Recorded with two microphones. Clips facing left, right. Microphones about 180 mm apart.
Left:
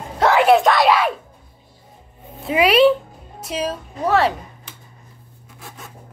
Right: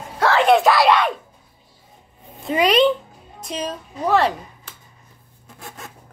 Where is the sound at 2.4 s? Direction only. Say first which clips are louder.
Left 2 dB; 5° left (ahead or behind).